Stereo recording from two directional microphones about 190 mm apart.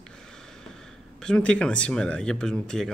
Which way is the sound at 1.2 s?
5° left (ahead or behind).